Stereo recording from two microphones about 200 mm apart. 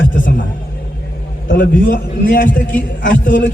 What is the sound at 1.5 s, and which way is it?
A man's voice, 45° left (ahead or behind).